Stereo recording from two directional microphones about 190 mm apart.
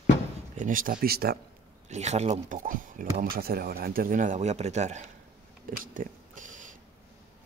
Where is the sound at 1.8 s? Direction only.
35° right (ahead or behind).